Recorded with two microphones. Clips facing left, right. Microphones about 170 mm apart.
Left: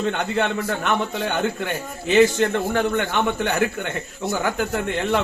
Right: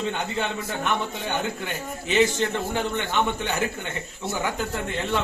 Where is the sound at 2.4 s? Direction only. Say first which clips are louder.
Left 5 dB; 55° left (ahead or behind).